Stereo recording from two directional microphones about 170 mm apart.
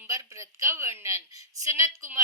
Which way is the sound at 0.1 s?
20° right (ahead or behind).